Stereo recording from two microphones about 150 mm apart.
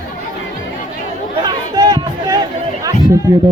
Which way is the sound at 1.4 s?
30° right (ahead or behind).